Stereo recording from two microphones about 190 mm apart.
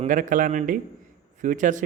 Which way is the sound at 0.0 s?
45° right (ahead or behind).